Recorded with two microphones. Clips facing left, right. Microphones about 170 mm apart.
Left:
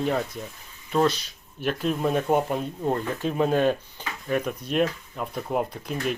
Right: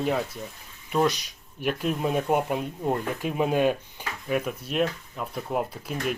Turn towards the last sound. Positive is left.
turn(degrees=-5)  # may be behind; listen again after turning